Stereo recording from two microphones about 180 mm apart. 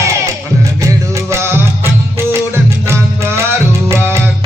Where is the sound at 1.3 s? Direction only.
15° right (ahead or behind).